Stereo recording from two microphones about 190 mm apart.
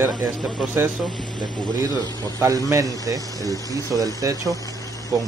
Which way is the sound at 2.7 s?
20° right (ahead or behind).